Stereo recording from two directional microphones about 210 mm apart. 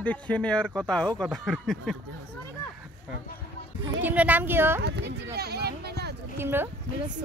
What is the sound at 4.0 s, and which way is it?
Speech, 10° right (ahead or behind).